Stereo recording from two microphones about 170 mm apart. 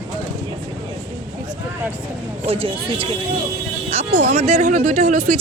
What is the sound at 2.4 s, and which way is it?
A woman's voice, 35° right (ahead or behind).